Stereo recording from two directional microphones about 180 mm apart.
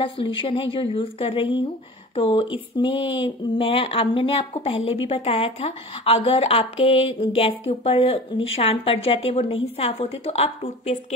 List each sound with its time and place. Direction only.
0.0 s speech: 30° left (ahead or behind)